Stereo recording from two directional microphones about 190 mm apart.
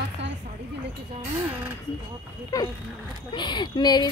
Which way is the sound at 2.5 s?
15° left (ahead or behind).